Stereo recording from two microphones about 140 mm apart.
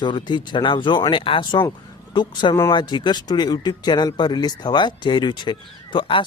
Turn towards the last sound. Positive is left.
turn(degrees=35)  # may be behind; listen again after turning